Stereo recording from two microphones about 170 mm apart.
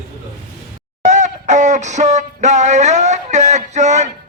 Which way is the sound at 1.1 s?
45° right (ahead or behind).